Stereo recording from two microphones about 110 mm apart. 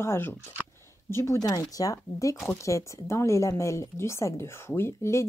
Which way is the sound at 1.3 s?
35° left (ahead or behind).